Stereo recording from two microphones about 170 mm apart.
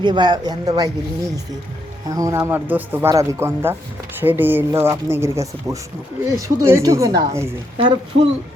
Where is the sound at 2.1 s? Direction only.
20° right (ahead or behind).